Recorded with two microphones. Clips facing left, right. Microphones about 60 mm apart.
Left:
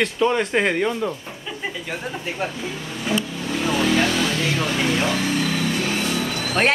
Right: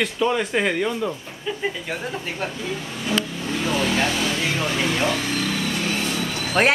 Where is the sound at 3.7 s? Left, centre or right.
Centre.